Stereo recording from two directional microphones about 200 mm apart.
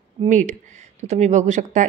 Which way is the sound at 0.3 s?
40° right (ahead or behind).